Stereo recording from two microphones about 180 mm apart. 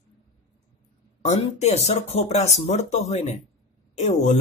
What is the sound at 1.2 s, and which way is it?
A man's voice, 40° left (ahead or behind).